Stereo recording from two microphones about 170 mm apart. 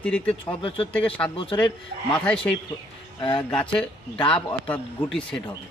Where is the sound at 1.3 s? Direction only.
30° left (ahead or behind).